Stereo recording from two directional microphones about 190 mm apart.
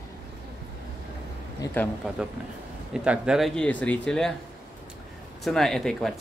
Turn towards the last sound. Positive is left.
turn(degrees=0)  # may be behind; listen again after turning